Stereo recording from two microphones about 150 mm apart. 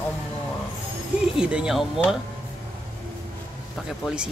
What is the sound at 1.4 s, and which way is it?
Speech, 5° right (ahead or behind).